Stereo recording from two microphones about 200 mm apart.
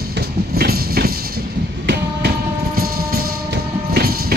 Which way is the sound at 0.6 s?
50° right (ahead or behind).